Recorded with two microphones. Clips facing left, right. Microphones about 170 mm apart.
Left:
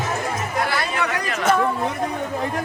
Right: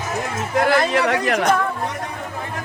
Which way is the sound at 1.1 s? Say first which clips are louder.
Right 6 dB; 70° right (ahead or behind).